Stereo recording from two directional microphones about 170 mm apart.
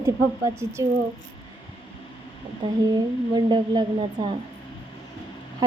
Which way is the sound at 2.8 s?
25° right (ahead or behind).